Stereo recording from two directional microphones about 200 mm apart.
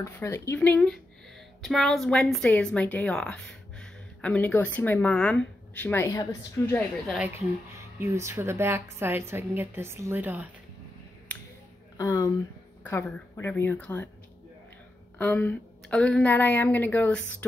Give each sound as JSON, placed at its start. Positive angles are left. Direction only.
{"t": 0.0, "sound": "a woman's voice", "side_deg": 15}
{"t": 7.1, "sound": "a woman's voice", "side_deg": -10}
{"t": 12.0, "sound": "speech", "side_deg": 15}
{"t": 15.1, "sound": "speech", "side_deg": 10}